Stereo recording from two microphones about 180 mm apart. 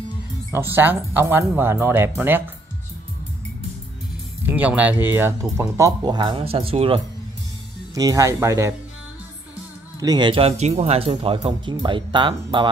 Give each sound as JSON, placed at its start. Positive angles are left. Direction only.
{"t": 0.5, "sound": "speech", "side_deg": -10}
{"t": 4.5, "sound": "speech", "side_deg": -10}
{"t": 7.9, "sound": "speech", "side_deg": -20}
{"t": 9.9, "sound": "speech", "side_deg": -20}